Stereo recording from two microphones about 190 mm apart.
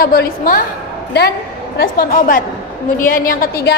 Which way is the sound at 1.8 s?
50° left (ahead or behind).